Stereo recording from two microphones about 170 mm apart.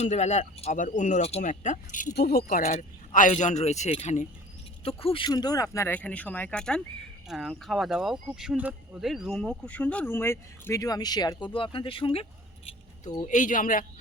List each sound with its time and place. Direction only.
0.0 s speech: 45° left (ahead or behind)
2.1 s speech: 65° left (ahead or behind); by 12.2 s 30° left (ahead or behind)
12.6 s keys jangling: 25° left (ahead or behind)
13.2 s speech: 50° left (ahead or behind)